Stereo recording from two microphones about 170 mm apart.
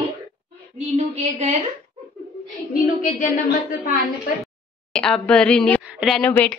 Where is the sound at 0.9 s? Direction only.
40° right (ahead or behind).